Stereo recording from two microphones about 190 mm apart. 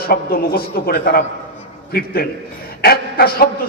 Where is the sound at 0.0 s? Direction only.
55° left (ahead or behind).